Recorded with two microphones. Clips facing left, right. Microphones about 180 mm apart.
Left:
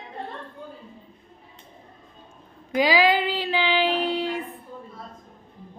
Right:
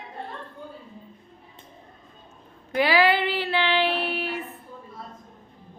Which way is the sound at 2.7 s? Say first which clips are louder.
Left 1 dB; 15° left (ahead or behind).